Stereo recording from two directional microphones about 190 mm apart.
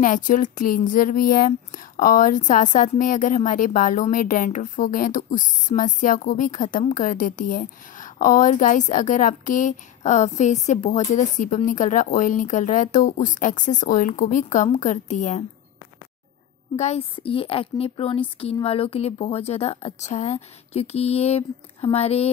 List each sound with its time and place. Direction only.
0.0 s speech: 45° left (ahead or behind)
16.7 s a woman's voice: 35° left (ahead or behind)